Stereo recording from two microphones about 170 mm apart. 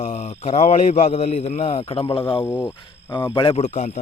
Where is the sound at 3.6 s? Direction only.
45° left (ahead or behind).